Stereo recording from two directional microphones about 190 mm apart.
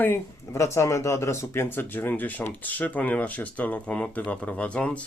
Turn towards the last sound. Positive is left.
turn(degrees=5)  # may be behind; listen again after turning